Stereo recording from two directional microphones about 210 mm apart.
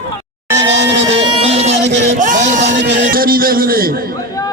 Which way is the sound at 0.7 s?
60° right (ahead or behind).